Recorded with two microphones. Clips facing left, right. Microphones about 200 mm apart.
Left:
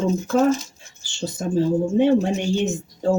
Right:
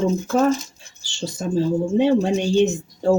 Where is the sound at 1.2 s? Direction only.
20° left (ahead or behind).